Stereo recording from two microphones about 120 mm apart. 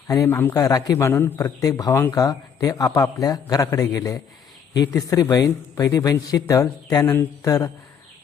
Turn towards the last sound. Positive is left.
turn(degrees=30)  # may be behind; listen again after turning